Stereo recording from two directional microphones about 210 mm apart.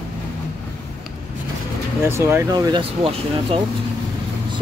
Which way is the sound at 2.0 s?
10° right (ahead or behind).